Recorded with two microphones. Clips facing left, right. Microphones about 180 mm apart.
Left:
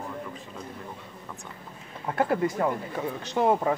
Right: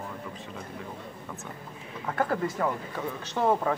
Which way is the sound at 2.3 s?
15° left (ahead or behind).